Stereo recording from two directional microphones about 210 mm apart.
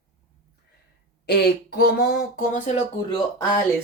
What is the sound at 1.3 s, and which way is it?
Speech, 50° left (ahead or behind).